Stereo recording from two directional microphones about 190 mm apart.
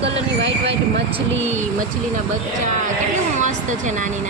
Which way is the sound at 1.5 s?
40° right (ahead or behind).